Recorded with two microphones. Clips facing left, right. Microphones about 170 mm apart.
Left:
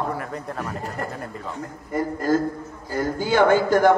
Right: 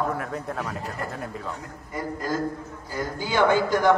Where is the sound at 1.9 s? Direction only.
50° left (ahead or behind).